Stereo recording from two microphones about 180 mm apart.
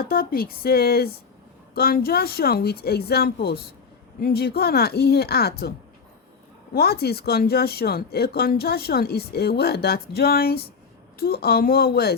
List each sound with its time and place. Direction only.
0.1 s speech: 55° left (ahead or behind)
6.7 s speech: 60° left (ahead or behind)